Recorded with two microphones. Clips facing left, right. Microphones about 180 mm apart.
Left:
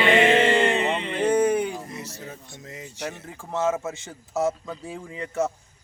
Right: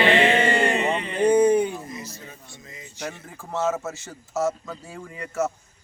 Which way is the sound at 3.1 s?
15° left (ahead or behind).